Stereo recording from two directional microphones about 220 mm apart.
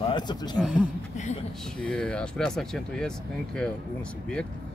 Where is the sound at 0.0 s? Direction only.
20° left (ahead or behind).